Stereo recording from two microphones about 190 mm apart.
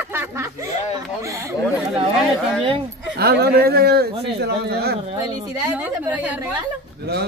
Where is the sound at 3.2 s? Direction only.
55° right (ahead or behind).